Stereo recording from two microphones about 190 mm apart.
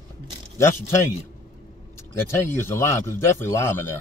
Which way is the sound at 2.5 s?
15° left (ahead or behind).